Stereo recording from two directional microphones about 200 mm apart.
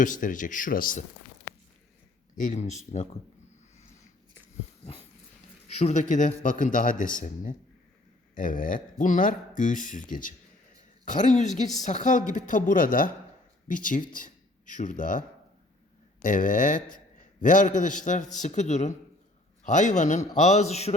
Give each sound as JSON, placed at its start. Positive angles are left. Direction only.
{"t": 0.0, "sound": "speech", "side_deg": 40}
{"t": 2.4, "sound": "speech", "side_deg": 35}
{"t": 5.8, "sound": "speech", "side_deg": 35}
{"t": 16.2, "sound": "speech", "side_deg": 40}